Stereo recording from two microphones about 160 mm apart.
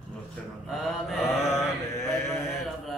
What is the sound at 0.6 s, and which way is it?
Mantra, centre (ahead or behind).